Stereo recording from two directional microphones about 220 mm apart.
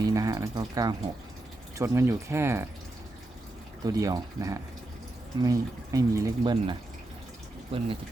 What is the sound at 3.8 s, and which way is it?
Speech, 15° right (ahead or behind).